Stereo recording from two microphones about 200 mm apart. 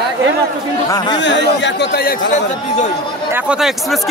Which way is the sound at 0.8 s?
20° left (ahead or behind).